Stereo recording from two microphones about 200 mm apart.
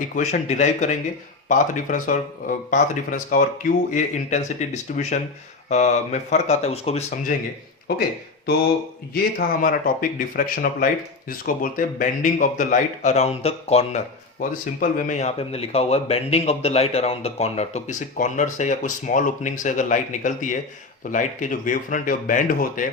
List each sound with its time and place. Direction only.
0.2 s a man's voice: 35° left (ahead or behind)
9.1 s a man's voice: 45° left (ahead or behind); by 14.0 s 30° left (ahead or behind)
14.8 s a man's voice: 40° left (ahead or behind)